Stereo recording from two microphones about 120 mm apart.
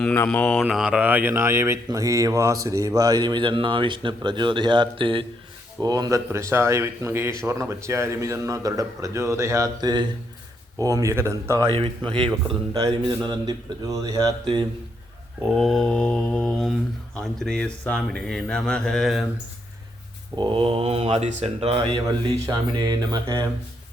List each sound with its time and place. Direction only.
0.3 s mantra: 10° left (ahead or behind)
0.7 s speech: 5° right (ahead or behind); by 5.2 s 45° right (ahead or behind)
5.8 s speech: 35° right (ahead or behind)
11.7 s speech: 50° right (ahead or behind)
12.7 s speech: 30° right (ahead or behind)
15.4 s speech: centre (ahead or behind)
20.3 s speech: 40° right (ahead or behind)
22.4 s speech: 35° right (ahead or behind)
23.2 s speech: 20° right (ahead or behind)